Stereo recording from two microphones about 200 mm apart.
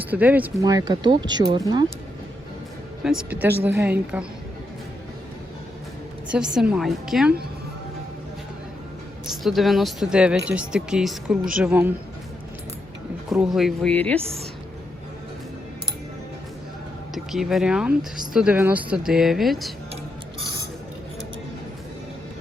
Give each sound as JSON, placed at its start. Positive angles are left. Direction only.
{"t": 0.0, "sound": "speech", "side_deg": -10}
{"t": 0.6, "sound": "speech", "side_deg": -20}
{"t": 3.0, "sound": "a woman's voice", "side_deg": -5}
{"t": 6.3, "sound": "speech", "side_deg": -5}
{"t": 9.3, "sound": "a woman's voice", "side_deg": 0}
{"t": 13.3, "sound": "speech", "side_deg": -5}
{"t": 17.3, "sound": "speech", "side_deg": 0}